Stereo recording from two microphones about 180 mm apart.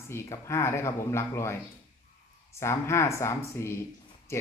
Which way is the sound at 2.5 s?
15° left (ahead or behind).